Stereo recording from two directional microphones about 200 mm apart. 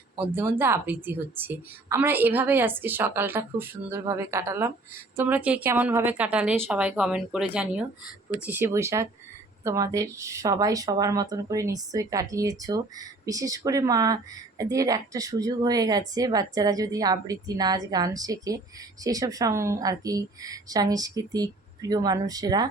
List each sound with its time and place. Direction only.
0.2 s a woman's voice: 10° right (ahead or behind)